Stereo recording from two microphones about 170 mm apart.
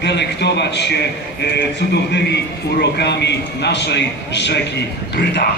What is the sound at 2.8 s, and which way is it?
A man's voice, 85° left.